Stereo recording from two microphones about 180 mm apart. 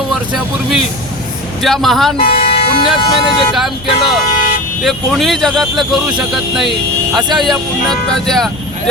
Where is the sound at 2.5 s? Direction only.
30° left (ahead or behind).